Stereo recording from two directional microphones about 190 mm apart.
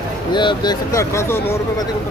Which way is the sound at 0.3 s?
25° left (ahead or behind).